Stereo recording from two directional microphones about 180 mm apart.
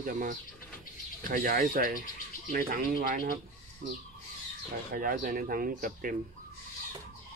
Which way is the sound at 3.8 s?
55° right (ahead or behind).